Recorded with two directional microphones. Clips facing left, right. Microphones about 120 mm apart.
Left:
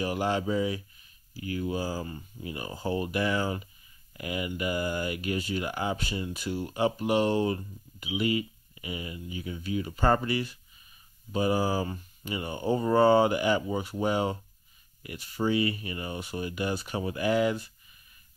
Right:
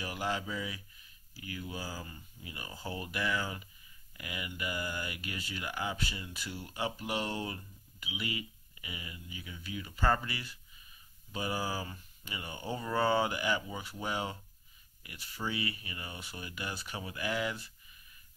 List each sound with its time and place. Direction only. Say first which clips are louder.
0.0 s speech: left 8 dB; 40° left (ahead or behind)
15.4 s speech: left 10 dB; 40° left (ahead or behind)